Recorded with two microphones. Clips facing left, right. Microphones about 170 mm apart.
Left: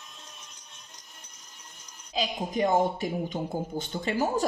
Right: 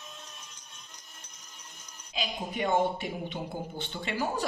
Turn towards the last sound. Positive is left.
turn(degrees=40)  # may be behind; listen again after turning